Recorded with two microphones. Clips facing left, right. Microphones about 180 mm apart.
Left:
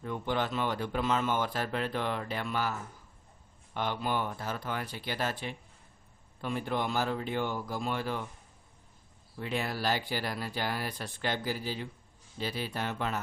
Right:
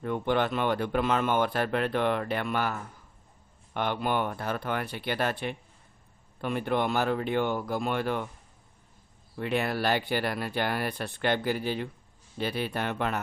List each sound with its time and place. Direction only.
0.0 s speech: 60° right (ahead or behind)
3.8 s speech: 60° right (ahead or behind)
9.4 s speech: 65° right (ahead or behind)